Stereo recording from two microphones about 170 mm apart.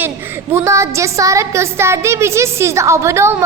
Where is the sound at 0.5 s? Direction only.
15° right (ahead or behind).